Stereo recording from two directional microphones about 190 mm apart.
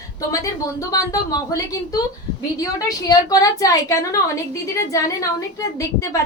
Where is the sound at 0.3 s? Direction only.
20° left (ahead or behind).